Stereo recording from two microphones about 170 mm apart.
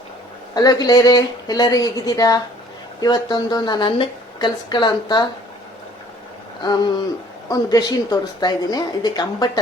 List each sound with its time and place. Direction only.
0.5 s a woman's voice: 20° left (ahead or behind)
6.6 s a woman's voice: 25° left (ahead or behind)